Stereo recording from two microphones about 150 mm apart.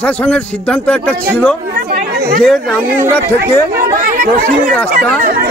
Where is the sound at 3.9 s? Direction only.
70° right (ahead or behind).